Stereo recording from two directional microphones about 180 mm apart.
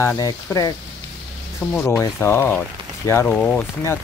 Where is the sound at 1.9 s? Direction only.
15° left (ahead or behind).